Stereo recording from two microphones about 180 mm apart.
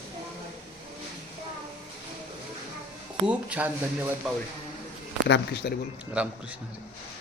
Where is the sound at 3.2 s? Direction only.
5° right (ahead or behind).